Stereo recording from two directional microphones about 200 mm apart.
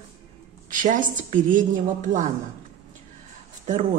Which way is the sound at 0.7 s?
40° right (ahead or behind).